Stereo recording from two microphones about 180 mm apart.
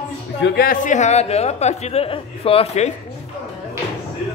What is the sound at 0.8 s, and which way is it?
Speech, 40° left (ahead or behind).